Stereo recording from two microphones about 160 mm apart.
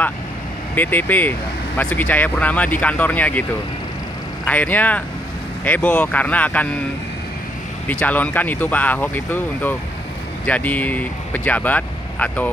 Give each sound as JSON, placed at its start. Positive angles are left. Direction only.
{"t": 0.7, "sound": "speech", "side_deg": 10}
{"t": 4.5, "sound": "speech", "side_deg": 10}
{"t": 7.9, "sound": "speech", "side_deg": 10}